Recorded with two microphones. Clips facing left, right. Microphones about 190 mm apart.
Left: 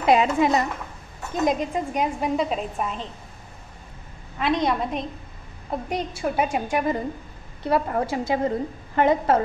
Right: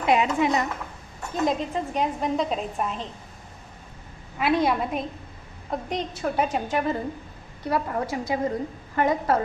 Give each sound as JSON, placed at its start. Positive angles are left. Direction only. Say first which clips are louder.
{"t": 0.0, "sound": "a woman's voice", "louder": "left 3 dB", "side_deg": 35}
{"t": 1.3, "sound": "a woman's voice", "louder": "left 2 dB", "side_deg": 15}
{"t": 4.4, "sound": "a woman's voice", "louder": "even", "side_deg": -5}
{"t": 5.7, "sound": "a woman's voice", "louder": "left 1 dB", "side_deg": 10}
{"t": 7.6, "sound": "a woman's voice", "louder": "left 3 dB", "side_deg": 25}